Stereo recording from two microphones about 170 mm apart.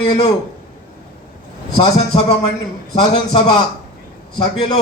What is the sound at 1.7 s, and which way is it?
Speech, 35° left (ahead or behind).